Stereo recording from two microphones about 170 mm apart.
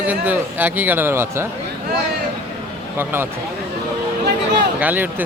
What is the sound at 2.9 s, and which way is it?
Speech, 10° right (ahead or behind).